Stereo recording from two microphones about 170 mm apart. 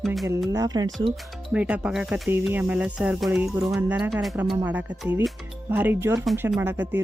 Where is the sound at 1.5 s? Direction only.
5° right (ahead or behind).